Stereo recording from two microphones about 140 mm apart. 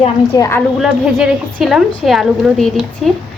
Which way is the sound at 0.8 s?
5° right (ahead or behind).